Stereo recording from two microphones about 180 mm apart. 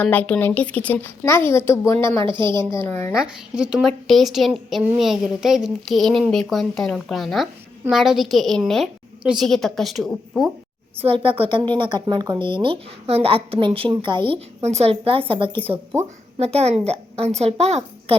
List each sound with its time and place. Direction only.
0.0 s a woman's voice: 10° left (ahead or behind)
2.2 s a woman's voice: 25° right (ahead or behind)
2.7 s a woman's voice: 15° left (ahead or behind)
3.2 s a woman's voice: 5° right (ahead or behind)
11.0 s a woman's voice: 30° right (ahead or behind)
15.7 s speech: 10° right (ahead or behind)
16.4 s a woman's voice: 35° right (ahead or behind)